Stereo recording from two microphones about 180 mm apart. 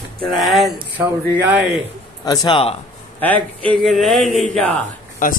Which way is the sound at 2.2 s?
25° left (ahead or behind).